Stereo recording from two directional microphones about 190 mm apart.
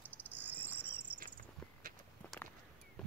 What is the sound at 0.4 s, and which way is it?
Cricket, 10° right (ahead or behind).